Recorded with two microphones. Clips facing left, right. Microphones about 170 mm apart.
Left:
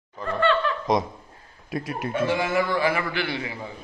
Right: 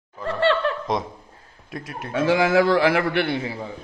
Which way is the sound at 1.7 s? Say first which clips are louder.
Left 5 dB; centre (ahead or behind).